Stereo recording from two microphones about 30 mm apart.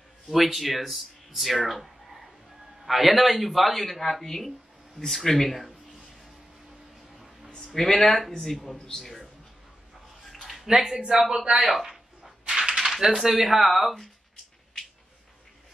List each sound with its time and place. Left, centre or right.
0.3 s speech: centre
7.7 s a man's voice: centre
10.4 s a sound: centre
10.7 s speech: centre
11.0 s a man's voice: right
11.2 s speech: centre
11.9 s a sound: centre
13.0 s speech: centre